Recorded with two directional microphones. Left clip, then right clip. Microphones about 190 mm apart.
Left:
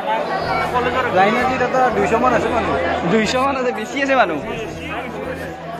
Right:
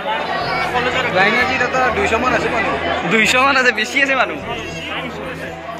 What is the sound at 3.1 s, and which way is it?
Speech, 20° left (ahead or behind).